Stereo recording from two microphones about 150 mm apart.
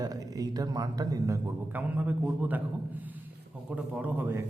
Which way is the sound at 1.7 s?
10° right (ahead or behind).